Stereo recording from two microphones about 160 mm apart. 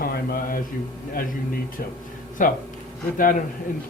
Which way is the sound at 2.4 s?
50° left (ahead or behind).